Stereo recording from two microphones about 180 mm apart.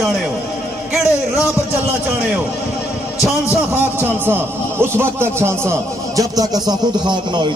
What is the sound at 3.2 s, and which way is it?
A man's voice, 10° right (ahead or behind).